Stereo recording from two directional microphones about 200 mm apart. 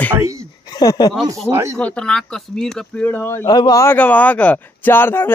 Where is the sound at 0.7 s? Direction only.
20° left (ahead or behind).